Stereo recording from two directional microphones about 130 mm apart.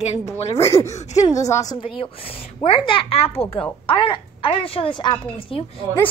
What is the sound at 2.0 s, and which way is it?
A woman's voice, 45° left (ahead or behind).